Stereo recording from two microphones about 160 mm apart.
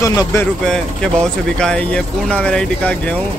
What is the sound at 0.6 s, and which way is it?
Speech, 5° left (ahead or behind).